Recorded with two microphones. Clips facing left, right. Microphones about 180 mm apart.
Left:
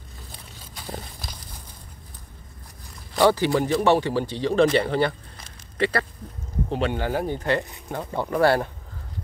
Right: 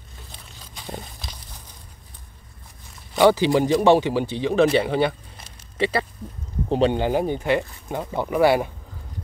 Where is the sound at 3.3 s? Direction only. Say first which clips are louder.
Right 4 dB; 15° right (ahead or behind).